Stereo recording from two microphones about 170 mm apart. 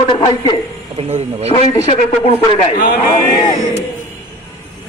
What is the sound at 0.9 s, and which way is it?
Speech, 35° right (ahead or behind).